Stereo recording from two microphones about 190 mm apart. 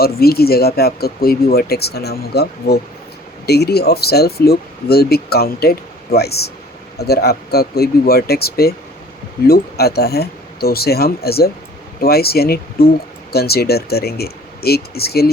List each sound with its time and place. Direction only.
0.0 s speech: 55° left (ahead or behind)